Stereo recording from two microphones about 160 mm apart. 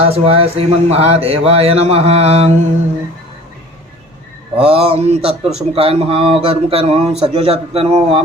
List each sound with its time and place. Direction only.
0.0 s speech: 35° right (ahead or behind)
4.5 s speech: 35° right (ahead or behind)